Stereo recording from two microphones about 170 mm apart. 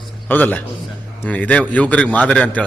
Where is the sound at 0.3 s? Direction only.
10° left (ahead or behind).